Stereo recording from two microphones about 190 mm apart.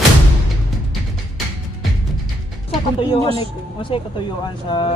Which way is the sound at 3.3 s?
30° left (ahead or behind).